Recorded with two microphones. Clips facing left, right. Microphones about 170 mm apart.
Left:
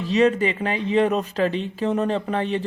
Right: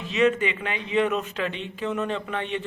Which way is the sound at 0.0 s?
35° left (ahead or behind).